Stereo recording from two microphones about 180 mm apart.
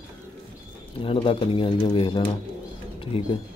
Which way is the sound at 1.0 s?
30° left (ahead or behind).